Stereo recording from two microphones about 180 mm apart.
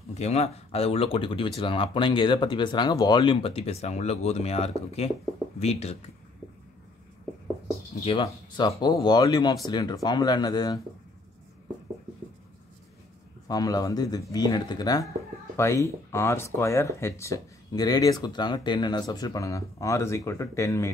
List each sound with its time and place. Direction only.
0.1 s speech: 35° left (ahead or behind)
8.0 s speech: 30° left (ahead or behind)
13.5 s speech: 20° left (ahead or behind)